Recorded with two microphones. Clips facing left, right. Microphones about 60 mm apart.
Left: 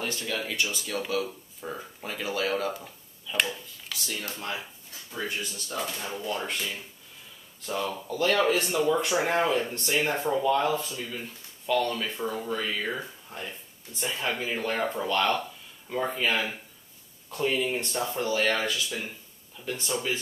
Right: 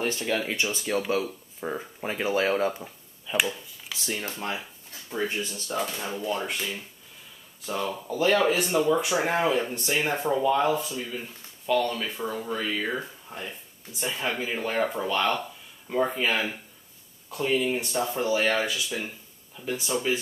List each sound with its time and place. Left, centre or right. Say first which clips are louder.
0.0 s speech: right 4 dB; right
6.2 s speech: right 2 dB; centre
7.6 s speech: right 1 dB; centre